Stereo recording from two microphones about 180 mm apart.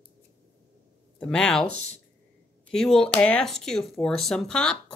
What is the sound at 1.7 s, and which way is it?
Speech, 50° right (ahead or behind).